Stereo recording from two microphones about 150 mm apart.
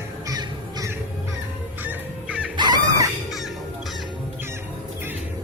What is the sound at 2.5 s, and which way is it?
Chicken, 30° right (ahead or behind).